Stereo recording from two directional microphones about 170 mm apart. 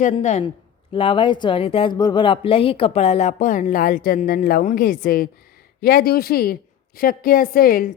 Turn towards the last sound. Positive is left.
turn(degrees=60)  # may be behind; listen again after turning